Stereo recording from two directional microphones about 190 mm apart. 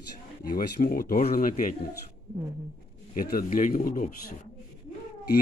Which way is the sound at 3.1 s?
50° left (ahead or behind).